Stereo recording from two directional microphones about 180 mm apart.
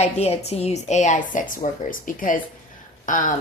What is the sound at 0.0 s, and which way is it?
Speech, 35° left (ahead or behind).